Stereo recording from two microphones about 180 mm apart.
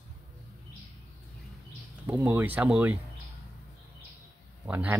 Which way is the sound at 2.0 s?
10° right (ahead or behind).